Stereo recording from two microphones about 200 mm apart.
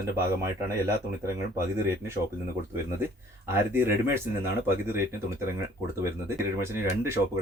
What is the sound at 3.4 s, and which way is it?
Speech, 10° right (ahead or behind).